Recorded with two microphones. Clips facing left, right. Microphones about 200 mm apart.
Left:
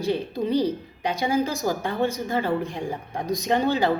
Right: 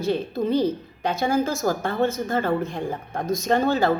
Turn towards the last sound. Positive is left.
turn(degrees=15)  # may be behind; listen again after turning